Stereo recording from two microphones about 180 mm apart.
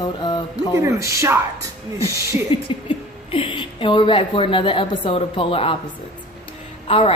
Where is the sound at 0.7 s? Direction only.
15° right (ahead or behind).